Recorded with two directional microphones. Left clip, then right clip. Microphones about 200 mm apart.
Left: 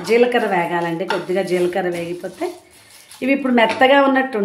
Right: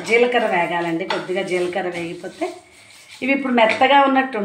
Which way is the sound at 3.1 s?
30° left (ahead or behind).